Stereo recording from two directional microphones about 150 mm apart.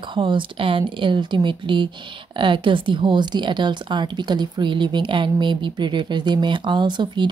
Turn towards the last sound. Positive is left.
turn(degrees=-30)  # may be behind; listen again after turning